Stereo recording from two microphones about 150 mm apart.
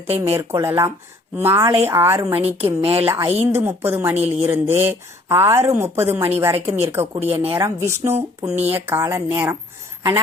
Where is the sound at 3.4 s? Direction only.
15° right (ahead or behind).